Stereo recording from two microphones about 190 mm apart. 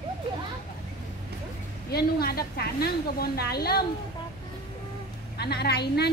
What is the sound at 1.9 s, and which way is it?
A woman's voice, 55° left (ahead or behind).